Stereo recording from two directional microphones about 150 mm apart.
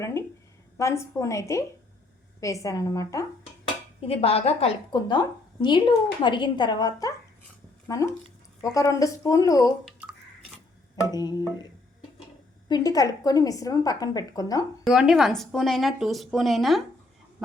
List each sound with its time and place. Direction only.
0.0 s a sound: 20° left (ahead or behind)
0.8 s a woman's voice: 20° left (ahead or behind)
4.0 s a woman's voice: 40° left (ahead or behind)
4.9 s a woman's voice: 30° left (ahead or behind)
11.1 s a woman's voice: 25° left (ahead or behind)
12.6 s a woman's voice: 25° left (ahead or behind)
14.8 s speech: centre (ahead or behind)